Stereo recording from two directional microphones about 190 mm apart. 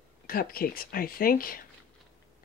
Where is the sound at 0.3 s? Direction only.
50° left (ahead or behind).